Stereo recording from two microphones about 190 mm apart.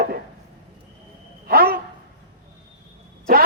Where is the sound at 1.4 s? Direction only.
50° right (ahead or behind).